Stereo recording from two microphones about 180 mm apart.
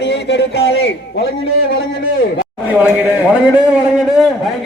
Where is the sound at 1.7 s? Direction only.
60° left (ahead or behind).